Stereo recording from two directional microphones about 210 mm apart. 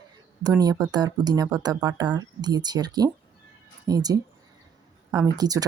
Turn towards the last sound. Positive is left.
turn(degrees=-15)  # may be behind; listen again after turning